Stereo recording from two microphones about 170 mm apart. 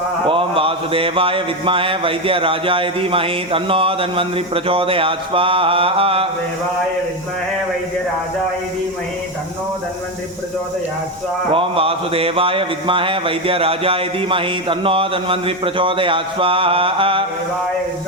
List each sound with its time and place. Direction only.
0.3 s speech: 30° right (ahead or behind)
11.5 s speech: 35° right (ahead or behind)